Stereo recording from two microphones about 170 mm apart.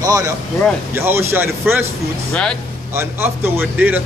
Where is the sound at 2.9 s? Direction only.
15° right (ahead or behind).